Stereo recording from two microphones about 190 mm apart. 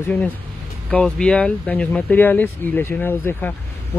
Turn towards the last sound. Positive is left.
turn(degrees=10)  # may be behind; listen again after turning